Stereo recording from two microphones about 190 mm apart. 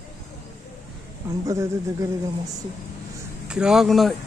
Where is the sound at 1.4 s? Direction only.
15° right (ahead or behind).